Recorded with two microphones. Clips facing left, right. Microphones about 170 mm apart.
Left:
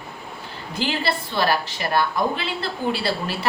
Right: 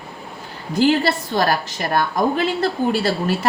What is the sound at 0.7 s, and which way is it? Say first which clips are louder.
A woman's voice: right 8 dB; 45° right (ahead or behind).